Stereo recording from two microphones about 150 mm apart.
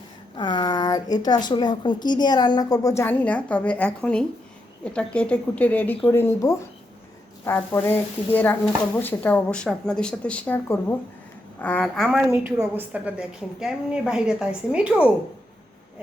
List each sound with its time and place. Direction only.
0.3 s a woman's voice: 30° left (ahead or behind); by 12.2 s centre (ahead or behind)
12.3 s a woman's voice: 15° right (ahead or behind)